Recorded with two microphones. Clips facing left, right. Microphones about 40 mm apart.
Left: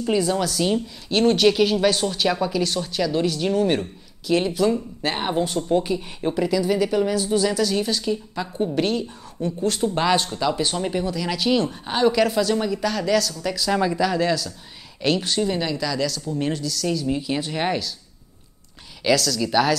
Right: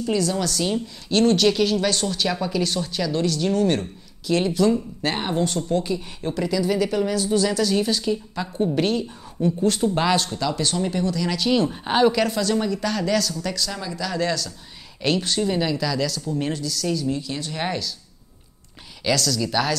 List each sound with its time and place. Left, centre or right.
0.0 s a woman's voice: centre
11.7 s a woman's voice: centre
12.1 s speech: centre
13.7 s speech: left
14.0 s speech: centre
17.1 s a woman's voice: centre
19.0 s speech: centre